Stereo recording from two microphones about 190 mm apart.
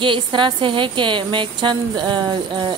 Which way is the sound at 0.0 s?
25° right (ahead or behind).